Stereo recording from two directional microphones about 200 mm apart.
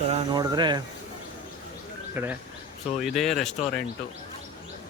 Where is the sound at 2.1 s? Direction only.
10° right (ahead or behind).